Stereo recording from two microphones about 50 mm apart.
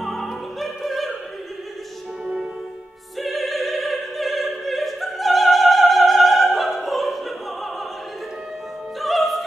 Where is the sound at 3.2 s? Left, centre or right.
Centre.